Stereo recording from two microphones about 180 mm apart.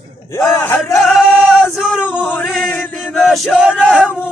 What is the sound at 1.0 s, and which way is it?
Singing, centre (ahead or behind).